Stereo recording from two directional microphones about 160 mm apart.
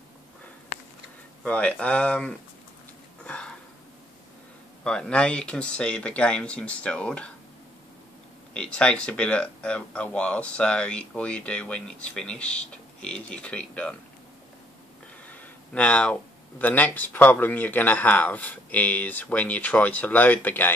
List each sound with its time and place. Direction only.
1.4 s speech: 10° left (ahead or behind)
3.3 s a sound: 5° left (ahead or behind)
4.8 s speech: 5° left (ahead or behind)
8.5 s speech: 5° left (ahead or behind)
15.2 s speech: 10° left (ahead or behind)